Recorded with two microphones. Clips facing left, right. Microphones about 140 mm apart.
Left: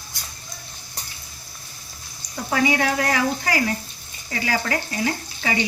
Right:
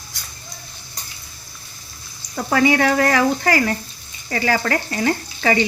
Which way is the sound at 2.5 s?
70° right (ahead or behind).